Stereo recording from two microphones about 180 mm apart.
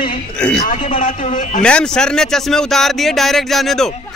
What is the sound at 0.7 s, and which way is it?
Speech, 45° left (ahead or behind).